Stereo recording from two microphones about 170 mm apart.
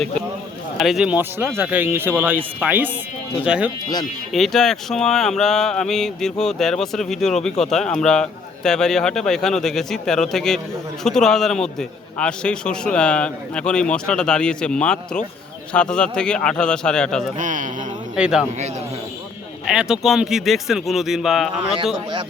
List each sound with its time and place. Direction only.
0.8 s a man's voice: centre (ahead or behind)
17.3 s a man's voice: 50° right (ahead or behind)
18.2 s a man's voice: 5° right (ahead or behind)
19.6 s a man's voice: 5° right (ahead or behind)